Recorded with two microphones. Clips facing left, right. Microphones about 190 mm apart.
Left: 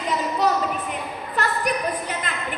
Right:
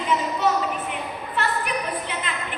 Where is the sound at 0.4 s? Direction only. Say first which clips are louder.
Left 1 dB; 40° left (ahead or behind).